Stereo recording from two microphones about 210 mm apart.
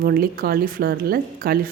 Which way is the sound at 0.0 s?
45° right (ahead or behind).